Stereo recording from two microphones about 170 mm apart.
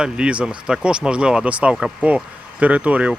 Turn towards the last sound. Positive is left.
turn(degrees=-10)  # may be behind; listen again after turning